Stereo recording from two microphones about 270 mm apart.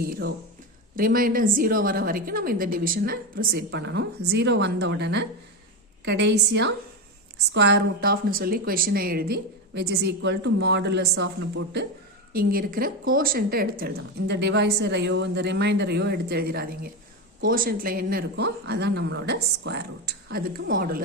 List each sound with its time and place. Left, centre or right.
0.0 s speech: right